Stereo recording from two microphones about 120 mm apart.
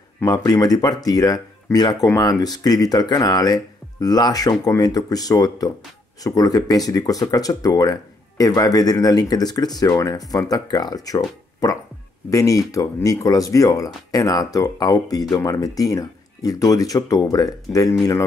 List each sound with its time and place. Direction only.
0.2 s speech: 30° left (ahead or behind)